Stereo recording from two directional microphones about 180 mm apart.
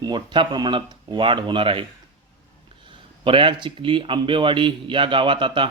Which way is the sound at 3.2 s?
30° right (ahead or behind).